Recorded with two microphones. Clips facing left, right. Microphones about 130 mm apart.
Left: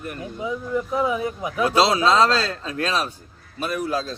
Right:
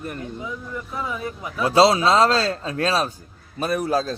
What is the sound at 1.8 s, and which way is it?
A man's voice, 25° right (ahead or behind).